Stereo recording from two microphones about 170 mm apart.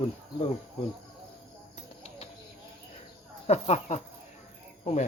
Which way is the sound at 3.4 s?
40° left (ahead or behind).